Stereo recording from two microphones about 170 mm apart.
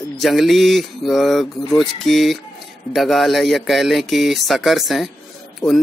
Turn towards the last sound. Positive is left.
turn(degrees=20)  # may be behind; listen again after turning